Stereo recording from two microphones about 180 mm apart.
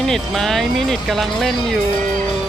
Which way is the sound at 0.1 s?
Centre (ahead or behind).